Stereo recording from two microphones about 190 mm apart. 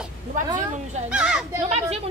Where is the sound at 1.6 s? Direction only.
35° right (ahead or behind).